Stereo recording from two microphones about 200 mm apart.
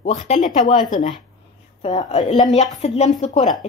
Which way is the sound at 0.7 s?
25° left (ahead or behind).